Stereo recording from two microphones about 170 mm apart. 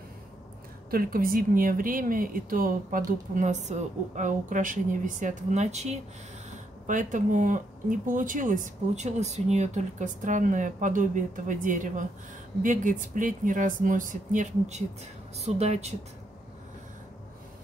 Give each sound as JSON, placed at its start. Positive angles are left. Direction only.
{"t": 0.8, "sound": "speech", "side_deg": -60}